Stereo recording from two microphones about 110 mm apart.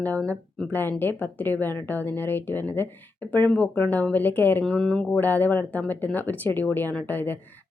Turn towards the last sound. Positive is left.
turn(degrees=20)  # may be behind; listen again after turning